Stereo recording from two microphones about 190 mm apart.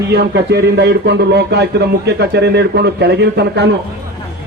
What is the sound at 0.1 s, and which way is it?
Speech, 60° right (ahead or behind).